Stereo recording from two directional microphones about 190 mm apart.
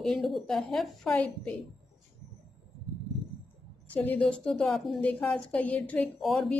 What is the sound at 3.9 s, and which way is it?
A woman's voice, 10° left (ahead or behind).